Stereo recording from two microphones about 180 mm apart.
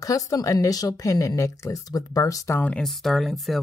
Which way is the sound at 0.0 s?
20° left (ahead or behind).